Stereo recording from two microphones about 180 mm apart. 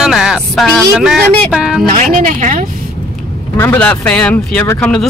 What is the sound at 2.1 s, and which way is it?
Speech, 50° right (ahead or behind).